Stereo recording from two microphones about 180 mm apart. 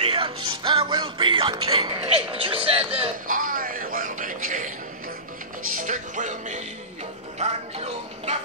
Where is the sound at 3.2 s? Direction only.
50° right (ahead or behind).